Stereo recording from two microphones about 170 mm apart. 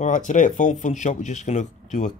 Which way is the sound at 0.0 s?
50° left (ahead or behind).